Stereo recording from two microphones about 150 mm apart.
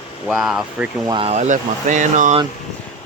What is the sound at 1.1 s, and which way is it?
Speech, 35° right (ahead or behind).